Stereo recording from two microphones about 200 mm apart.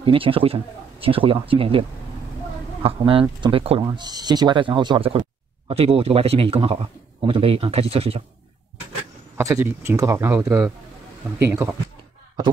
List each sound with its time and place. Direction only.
0.0 s speech: 25° right (ahead or behind)
9.4 s speech: 15° right (ahead or behind)